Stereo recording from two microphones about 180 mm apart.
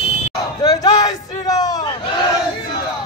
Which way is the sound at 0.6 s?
20° left (ahead or behind).